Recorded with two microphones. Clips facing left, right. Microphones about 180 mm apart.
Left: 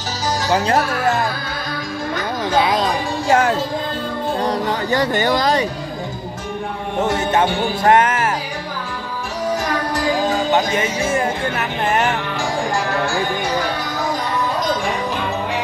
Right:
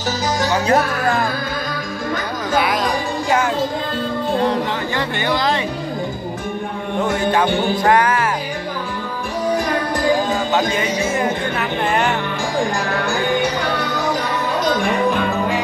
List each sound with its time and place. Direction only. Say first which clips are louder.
0.5 s music: left 1 dB; 25° left (ahead or behind)
2.5 s music: left 1 dB; 25° left (ahead or behind)
4.5 s speech: left 1 dB; 40° left (ahead or behind)
7.0 s music: even; 25° left (ahead or behind)
10.5 s music: left 1 dB; 25° left (ahead or behind)
14.8 s music: right 4 dB; 55° right (ahead or behind)